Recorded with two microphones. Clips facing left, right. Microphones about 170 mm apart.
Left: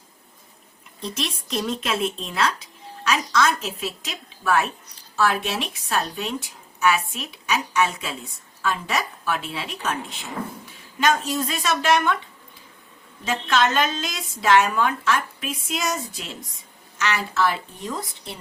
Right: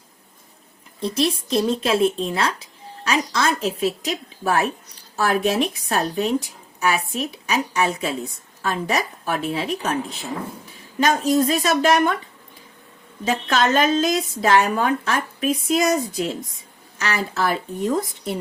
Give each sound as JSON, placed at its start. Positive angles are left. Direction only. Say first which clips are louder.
{"t": 1.0, "sound": "a woman's voice", "louder": "right 8 dB", "side_deg": -35}
{"t": 11.0, "sound": "a woman's voice", "louder": "right 4 dB", "side_deg": -40}
{"t": 13.2, "sound": "a woman's voice", "louder": "right 2 dB", "side_deg": -40}